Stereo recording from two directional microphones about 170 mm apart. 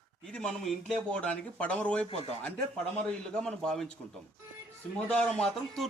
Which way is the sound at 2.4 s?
5° left (ahead or behind).